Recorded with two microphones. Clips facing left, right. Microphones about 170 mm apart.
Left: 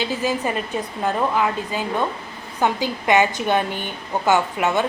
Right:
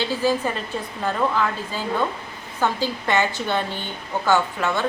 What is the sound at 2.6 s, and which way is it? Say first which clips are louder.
A woman's voice: left 2 dB; 15° left (ahead or behind).